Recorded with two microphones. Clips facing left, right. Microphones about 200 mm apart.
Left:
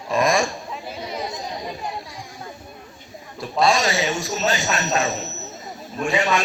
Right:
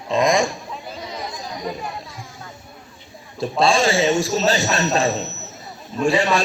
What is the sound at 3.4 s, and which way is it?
A man's voice, 30° right (ahead or behind).